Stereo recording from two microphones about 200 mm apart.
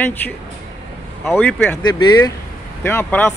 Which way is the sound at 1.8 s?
20° left (ahead or behind).